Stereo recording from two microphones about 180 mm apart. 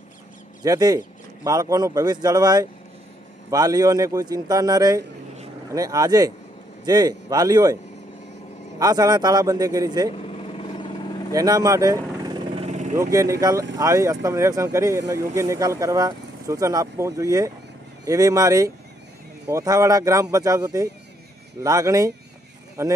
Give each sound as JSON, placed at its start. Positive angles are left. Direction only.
{"t": 0.7, "sound": "speech", "side_deg": -20}
{"t": 8.7, "sound": "speech", "side_deg": -20}
{"t": 10.1, "sound": "vehicle", "side_deg": 35}
{"t": 11.3, "sound": "vehicle", "side_deg": -20}
{"t": 12.6, "sound": "vehicle", "side_deg": -40}
{"t": 12.9, "sound": "speech", "side_deg": -15}